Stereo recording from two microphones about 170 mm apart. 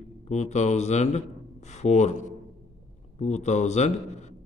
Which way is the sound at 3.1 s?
45° left (ahead or behind).